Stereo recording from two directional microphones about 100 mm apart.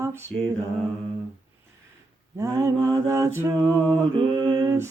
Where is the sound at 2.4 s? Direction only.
35° right (ahead or behind).